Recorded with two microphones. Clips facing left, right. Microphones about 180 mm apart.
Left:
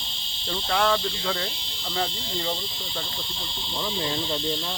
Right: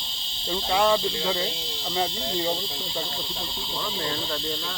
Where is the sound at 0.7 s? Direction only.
15° right (ahead or behind).